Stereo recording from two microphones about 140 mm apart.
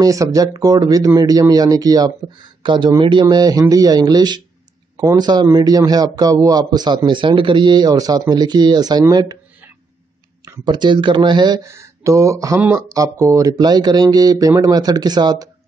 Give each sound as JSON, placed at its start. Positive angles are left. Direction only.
{"t": 0.0, "sound": "a man's voice", "side_deg": -25}
{"t": 10.4, "sound": "a man's voice", "side_deg": -30}